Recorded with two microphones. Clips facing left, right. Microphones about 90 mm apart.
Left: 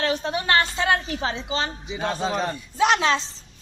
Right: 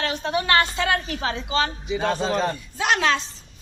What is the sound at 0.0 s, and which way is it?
A woman's voice, 35° left (ahead or behind).